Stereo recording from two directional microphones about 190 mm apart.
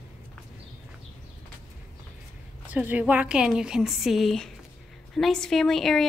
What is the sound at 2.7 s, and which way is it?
A woman's voice, 10° right (ahead or behind).